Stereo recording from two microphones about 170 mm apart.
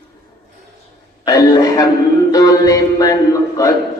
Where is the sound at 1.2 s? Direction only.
20° left (ahead or behind).